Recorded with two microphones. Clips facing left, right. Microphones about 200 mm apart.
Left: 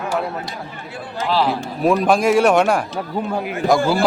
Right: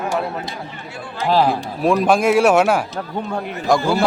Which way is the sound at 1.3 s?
45° right (ahead or behind).